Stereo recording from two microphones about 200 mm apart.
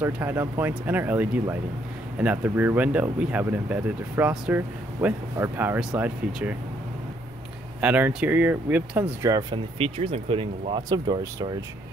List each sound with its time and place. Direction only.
0.0 s speech: 10° right (ahead or behind)
7.8 s speech: 10° right (ahead or behind)
9.8 s speech: 30° right (ahead or behind)